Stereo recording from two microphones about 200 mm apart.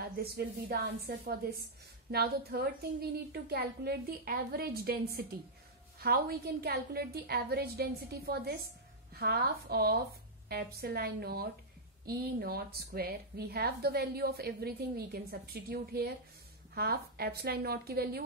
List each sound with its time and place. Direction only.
0.0 s a woman's voice: 50° right (ahead or behind)